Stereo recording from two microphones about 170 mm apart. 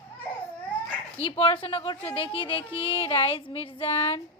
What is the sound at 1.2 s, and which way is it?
A woman's voice, 35° left (ahead or behind).